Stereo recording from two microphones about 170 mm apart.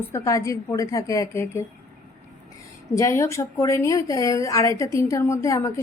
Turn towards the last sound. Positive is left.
turn(degrees=20)  # may be behind; listen again after turning